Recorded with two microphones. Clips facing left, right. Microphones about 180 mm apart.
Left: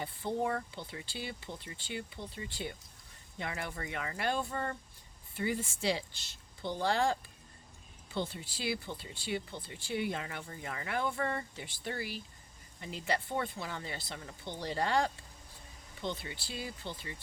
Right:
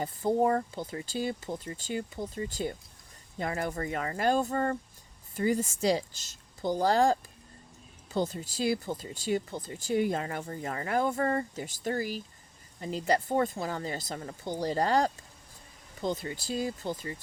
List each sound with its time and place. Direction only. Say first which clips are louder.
0.0 s speech: right 8 dB; 40° right (ahead or behind)